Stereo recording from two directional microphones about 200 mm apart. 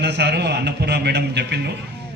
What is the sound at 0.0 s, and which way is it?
A man's voice, 55° right (ahead or behind).